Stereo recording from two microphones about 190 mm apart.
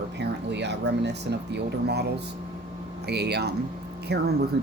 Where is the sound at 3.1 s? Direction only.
60° right (ahead or behind).